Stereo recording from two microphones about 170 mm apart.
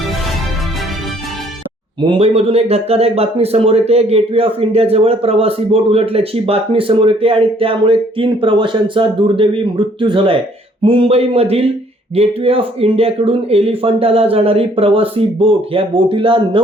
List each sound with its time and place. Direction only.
2.0 s speech: 35° right (ahead or behind)